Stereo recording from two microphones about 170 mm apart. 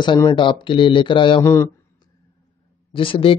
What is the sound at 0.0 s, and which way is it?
Speech, 25° left (ahead or behind).